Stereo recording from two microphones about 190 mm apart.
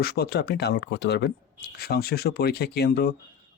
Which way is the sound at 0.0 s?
55° left (ahead or behind).